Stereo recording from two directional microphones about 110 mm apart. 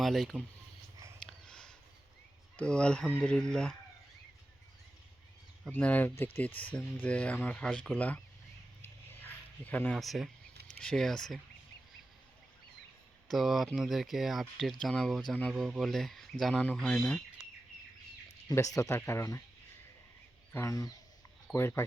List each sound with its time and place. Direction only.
0.0 s speech: centre (ahead or behind)
1.2 s a sound: 5° left (ahead or behind)
2.6 s speech: 10° left (ahead or behind)
5.7 s speech: 15° left (ahead or behind)
9.6 s speech: 15° left (ahead or behind)
10.0 s speech: centre (ahead or behind)
13.2 s speech: centre (ahead or behind)
18.5 s speech: 30° left (ahead or behind)
20.5 s speech: 25° left (ahead or behind)
21.5 s speech: 25° left (ahead or behind)